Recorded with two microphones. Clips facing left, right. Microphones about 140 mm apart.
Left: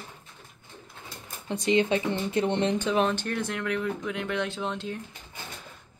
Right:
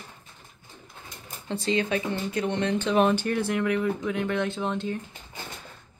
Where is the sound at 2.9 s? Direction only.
5° right (ahead or behind).